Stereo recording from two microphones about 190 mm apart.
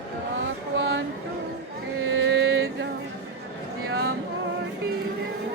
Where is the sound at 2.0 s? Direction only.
90° right.